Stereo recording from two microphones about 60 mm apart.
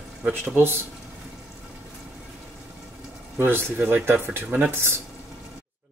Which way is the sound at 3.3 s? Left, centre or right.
Right.